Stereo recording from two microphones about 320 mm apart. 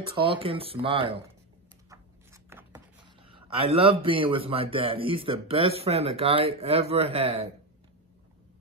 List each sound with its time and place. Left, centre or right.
0.2 s speech: centre
2.5 s writing: centre
3.3 s speech: centre